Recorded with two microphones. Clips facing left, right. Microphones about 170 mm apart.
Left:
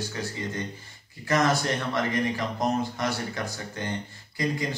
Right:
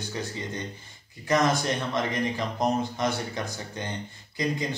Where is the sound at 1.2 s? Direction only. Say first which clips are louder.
Even; 20° right (ahead or behind).